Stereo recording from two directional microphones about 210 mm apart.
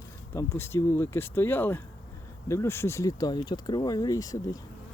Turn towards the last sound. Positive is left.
turn(degrees=15)  # may be behind; listen again after turning